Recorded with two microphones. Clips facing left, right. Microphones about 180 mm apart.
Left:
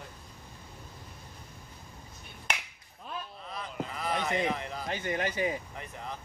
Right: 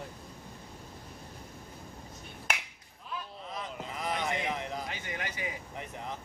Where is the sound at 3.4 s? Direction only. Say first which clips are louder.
Left 2 dB; 20° right (ahead or behind).